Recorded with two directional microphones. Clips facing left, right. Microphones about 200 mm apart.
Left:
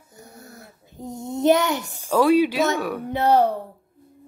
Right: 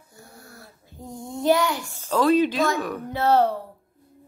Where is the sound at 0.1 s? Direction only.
20° left (ahead or behind).